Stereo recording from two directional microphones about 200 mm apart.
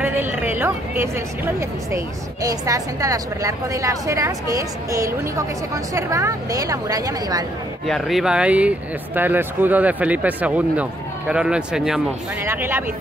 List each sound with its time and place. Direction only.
0.0 s a woman's voice: 10° right (ahead or behind)
7.8 s a woman's voice: centre (ahead or behind)